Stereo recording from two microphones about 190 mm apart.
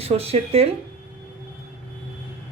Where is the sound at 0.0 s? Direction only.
30° right (ahead or behind).